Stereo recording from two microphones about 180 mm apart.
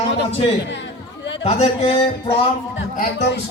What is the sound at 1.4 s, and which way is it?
Speech, 35° left (ahead or behind).